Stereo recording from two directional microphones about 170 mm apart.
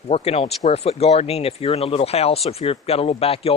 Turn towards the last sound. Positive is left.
turn(degrees=35)  # may be behind; listen again after turning